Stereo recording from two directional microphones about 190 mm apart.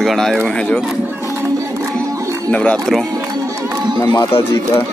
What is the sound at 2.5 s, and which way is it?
Speech, 5° left (ahead or behind).